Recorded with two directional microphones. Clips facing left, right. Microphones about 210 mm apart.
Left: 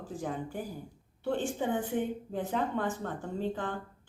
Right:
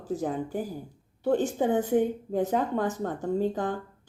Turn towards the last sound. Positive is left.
turn(degrees=-40)  # may be behind; listen again after turning